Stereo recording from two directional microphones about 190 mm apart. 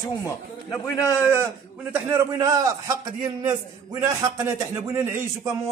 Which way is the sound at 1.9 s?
10° right (ahead or behind).